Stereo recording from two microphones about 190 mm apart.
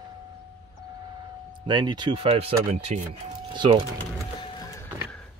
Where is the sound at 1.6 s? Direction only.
25° right (ahead or behind).